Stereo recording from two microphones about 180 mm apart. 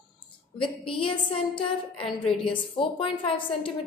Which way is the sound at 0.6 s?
30° left (ahead or behind).